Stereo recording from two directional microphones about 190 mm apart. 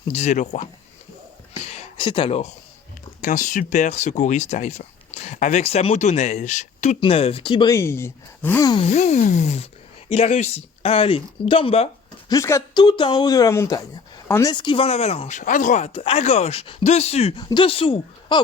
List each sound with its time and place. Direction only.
0.0 s speech: 35° left (ahead or behind)
2.0 s speech: 25° left (ahead or behind)
3.2 s speech: 45° left (ahead or behind); by 8.9 s 20° left (ahead or behind)
8.9 s speech: 35° left (ahead or behind)
12.3 s speech: 15° left (ahead or behind)